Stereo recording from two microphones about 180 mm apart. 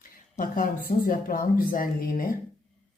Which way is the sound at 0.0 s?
50° left (ahead or behind).